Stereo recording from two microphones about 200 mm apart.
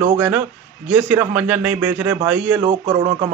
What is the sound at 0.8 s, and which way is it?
A man's voice, 10° right (ahead or behind).